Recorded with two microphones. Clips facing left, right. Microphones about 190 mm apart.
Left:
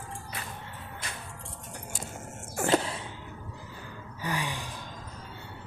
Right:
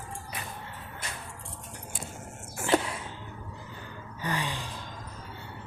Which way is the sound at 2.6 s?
35° left (ahead or behind).